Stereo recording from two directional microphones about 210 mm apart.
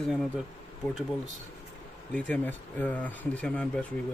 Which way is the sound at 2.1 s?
5° left (ahead or behind).